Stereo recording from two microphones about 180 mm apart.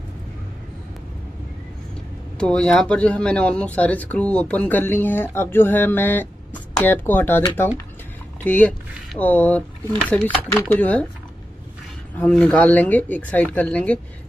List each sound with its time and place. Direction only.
2.3 s speech: 5° left (ahead or behind)
12.2 s speech: 5° left (ahead or behind)